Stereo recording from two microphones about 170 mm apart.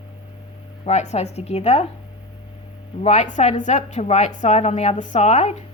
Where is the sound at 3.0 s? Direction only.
45° left (ahead or behind).